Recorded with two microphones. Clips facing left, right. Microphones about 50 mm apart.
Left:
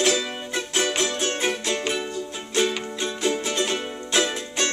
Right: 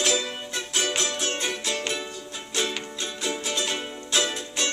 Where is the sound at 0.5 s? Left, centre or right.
Centre.